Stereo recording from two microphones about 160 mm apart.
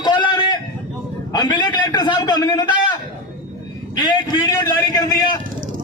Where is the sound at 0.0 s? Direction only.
30° left (ahead or behind).